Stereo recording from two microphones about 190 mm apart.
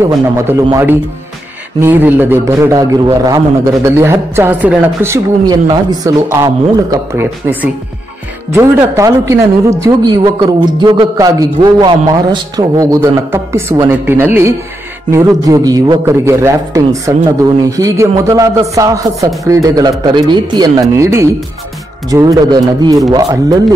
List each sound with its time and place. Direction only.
0.7 s a man's voice: 15° right (ahead or behind)